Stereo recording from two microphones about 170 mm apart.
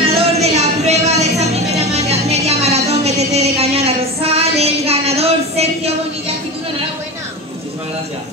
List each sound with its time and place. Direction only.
0.0 s music: 35° right (ahead or behind)